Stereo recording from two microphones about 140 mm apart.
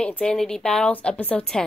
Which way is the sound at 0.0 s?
5° left (ahead or behind).